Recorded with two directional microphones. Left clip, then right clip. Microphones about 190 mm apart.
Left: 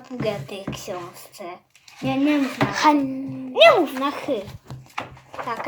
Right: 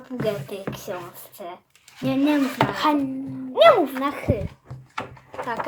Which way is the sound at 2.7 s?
25° left (ahead or behind).